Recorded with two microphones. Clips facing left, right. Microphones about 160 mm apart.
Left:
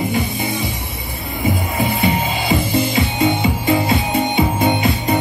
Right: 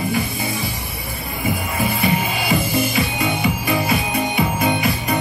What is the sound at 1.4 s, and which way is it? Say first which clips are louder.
Music: left 3 dB; 20° left (ahead or behind).